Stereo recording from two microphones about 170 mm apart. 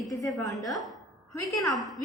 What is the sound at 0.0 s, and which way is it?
Speech, 20° left (ahead or behind).